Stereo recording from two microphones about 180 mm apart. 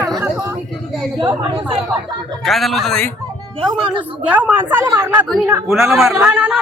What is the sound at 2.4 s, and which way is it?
Speech, centre (ahead or behind).